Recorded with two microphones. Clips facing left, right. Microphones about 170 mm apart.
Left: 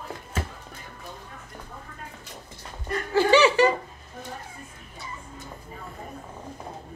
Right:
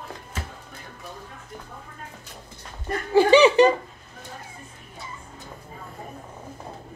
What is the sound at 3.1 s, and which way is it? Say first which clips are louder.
Laughter: right 4 dB; 15° right (ahead or behind).